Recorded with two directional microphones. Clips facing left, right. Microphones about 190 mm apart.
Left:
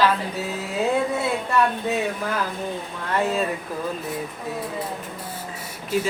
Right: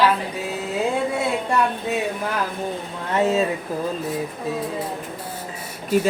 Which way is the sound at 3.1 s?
25° right (ahead or behind).